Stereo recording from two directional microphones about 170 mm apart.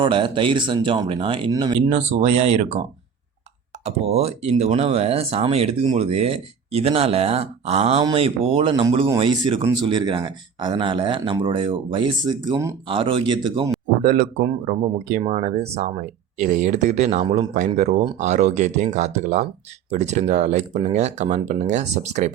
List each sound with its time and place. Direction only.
0.0 s speech: 30° right (ahead or behind)
1.9 s speech: 40° right (ahead or behind)
3.8 s speech: 40° right (ahead or behind)
14.0 s speech: 50° right (ahead or behind)
15.2 s speech: 40° right (ahead or behind)